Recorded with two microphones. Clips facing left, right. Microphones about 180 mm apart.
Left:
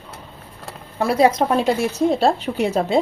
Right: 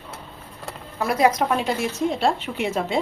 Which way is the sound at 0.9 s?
30° left (ahead or behind).